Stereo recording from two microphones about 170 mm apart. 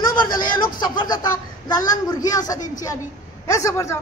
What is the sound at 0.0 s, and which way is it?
A woman's voice, 25° left (ahead or behind).